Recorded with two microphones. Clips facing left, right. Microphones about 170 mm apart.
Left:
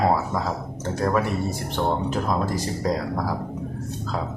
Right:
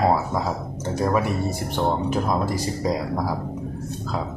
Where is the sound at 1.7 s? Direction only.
10° right (ahead or behind).